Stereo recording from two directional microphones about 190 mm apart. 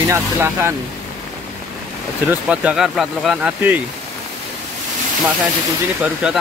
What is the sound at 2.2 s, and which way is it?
Speech, 5° right (ahead or behind).